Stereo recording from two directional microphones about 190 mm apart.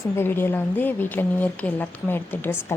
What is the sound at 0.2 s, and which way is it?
A woman's voice, 10° left (ahead or behind).